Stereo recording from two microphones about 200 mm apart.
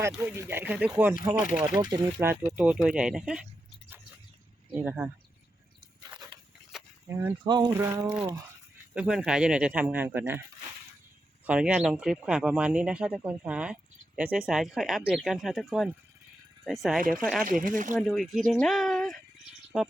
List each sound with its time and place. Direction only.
0.2 s speech: 15° right (ahead or behind)
1.8 s speech: 20° right (ahead or behind); by 3.4 s 5° right (ahead or behind)
4.7 s speech: 10° right (ahead or behind)
6.0 s a sound: 20° right (ahead or behind)
6.7 s a sound: centre (ahead or behind)
7.1 s speech: 10° right (ahead or behind)
7.4 s speech: 20° right (ahead or behind)
9.0 s speech: 5° right (ahead or behind)
11.4 s speech: 5° right (ahead or behind)
17.4 s speech: 40° right (ahead or behind)
18.0 s speech: centre (ahead or behind)